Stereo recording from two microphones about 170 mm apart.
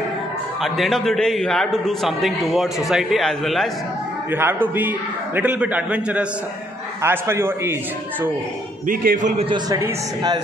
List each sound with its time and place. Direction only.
0.6 s a man's voice: centre (ahead or behind)
4.3 s a man's voice: 10° right (ahead or behind)
8.8 s a man's voice: 50° right (ahead or behind)
9.7 s speech: 20° right (ahead or behind)